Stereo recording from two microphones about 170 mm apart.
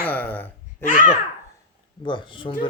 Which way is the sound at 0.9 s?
50° left (ahead or behind).